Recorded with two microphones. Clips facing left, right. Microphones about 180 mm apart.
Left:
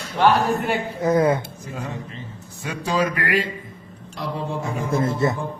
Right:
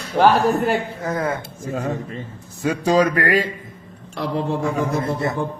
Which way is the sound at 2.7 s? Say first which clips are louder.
Right 6 dB; 40° right (ahead or behind).